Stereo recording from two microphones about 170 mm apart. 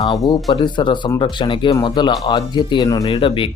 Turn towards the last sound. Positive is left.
turn(degrees=30)  # may be behind; listen again after turning